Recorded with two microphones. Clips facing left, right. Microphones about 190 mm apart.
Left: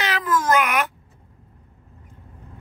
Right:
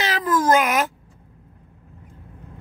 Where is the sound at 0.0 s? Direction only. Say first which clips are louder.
Right 2 dB; 35° right (ahead or behind).